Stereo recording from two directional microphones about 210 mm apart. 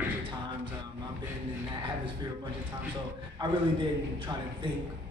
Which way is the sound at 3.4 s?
25° right (ahead or behind).